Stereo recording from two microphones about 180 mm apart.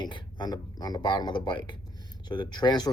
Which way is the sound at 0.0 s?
25° left (ahead or behind).